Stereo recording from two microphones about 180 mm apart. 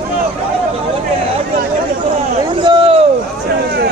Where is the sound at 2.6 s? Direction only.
30° right (ahead or behind).